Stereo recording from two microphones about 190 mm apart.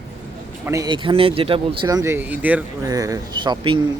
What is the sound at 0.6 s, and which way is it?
Speech, 15° right (ahead or behind).